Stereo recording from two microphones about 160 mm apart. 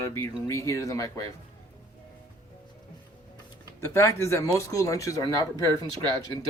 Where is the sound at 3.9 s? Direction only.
15° left (ahead or behind).